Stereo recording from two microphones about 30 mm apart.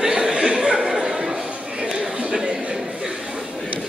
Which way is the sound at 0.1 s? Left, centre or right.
Right.